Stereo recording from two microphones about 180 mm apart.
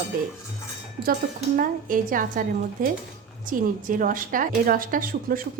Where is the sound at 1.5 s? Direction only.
50° right (ahead or behind).